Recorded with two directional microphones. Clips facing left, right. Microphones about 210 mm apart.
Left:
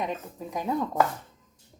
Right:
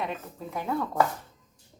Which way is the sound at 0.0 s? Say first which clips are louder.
Left 2 dB; 15° left (ahead or behind).